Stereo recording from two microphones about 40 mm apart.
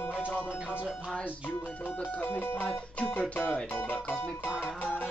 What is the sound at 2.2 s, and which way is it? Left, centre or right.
Music, left.